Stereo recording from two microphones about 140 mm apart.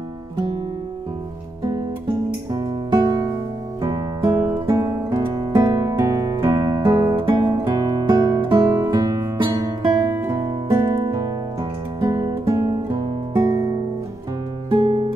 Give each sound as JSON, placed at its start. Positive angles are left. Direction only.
{"t": 2.5, "sound": "music", "side_deg": -25}
{"t": 4.7, "sound": "music", "side_deg": -25}
{"t": 7.2, "sound": "guitar", "side_deg": -30}
{"t": 8.5, "sound": "music", "side_deg": -25}
{"t": 10.0, "sound": "music", "side_deg": -20}
{"t": 14.7, "sound": "music", "side_deg": -40}